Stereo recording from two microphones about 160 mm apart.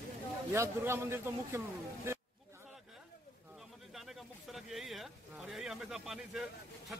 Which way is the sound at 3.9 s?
Centre (ahead or behind).